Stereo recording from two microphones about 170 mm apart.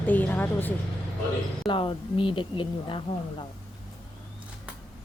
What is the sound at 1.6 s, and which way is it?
Speech, 30° left (ahead or behind).